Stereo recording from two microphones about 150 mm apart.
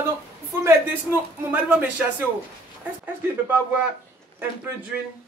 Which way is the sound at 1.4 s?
10° right (ahead or behind).